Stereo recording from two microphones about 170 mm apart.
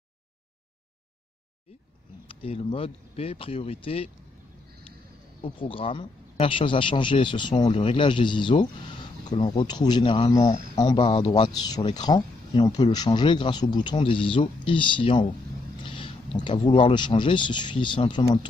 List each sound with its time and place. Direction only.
2.2 s speech: 35° left (ahead or behind)
5.4 s a man's voice: 30° left (ahead or behind)
15.8 s a sound: 30° left (ahead or behind)
16.4 s a man's voice: 30° left (ahead or behind)